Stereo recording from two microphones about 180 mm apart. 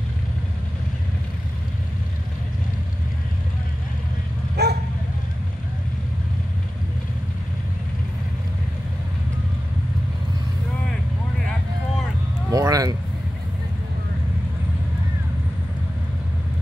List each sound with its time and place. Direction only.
4.6 s bow-wow: 65° right (ahead or behind)
12.4 s basketball bounce: 20° right (ahead or behind)